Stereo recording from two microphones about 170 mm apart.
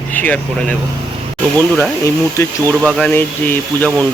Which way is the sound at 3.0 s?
10° left (ahead or behind).